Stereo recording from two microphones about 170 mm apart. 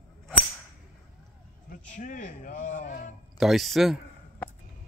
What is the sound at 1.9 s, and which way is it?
A man's voice, 50° left (ahead or behind).